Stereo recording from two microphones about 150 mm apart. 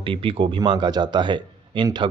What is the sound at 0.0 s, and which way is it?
Speech, 35° right (ahead or behind).